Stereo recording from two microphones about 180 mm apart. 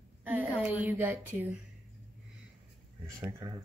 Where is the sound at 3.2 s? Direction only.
15° right (ahead or behind).